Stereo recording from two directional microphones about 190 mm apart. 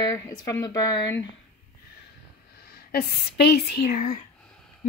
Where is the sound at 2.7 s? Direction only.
55° left (ahead or behind).